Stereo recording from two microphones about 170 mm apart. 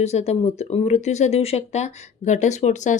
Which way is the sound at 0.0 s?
40° left (ahead or behind).